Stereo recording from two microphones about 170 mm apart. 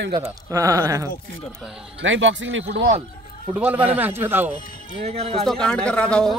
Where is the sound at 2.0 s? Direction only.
90° right.